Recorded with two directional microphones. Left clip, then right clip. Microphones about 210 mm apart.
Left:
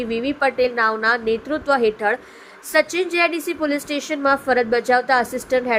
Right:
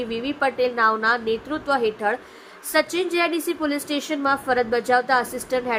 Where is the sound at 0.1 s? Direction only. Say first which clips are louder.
Left 5 dB; 15° left (ahead or behind).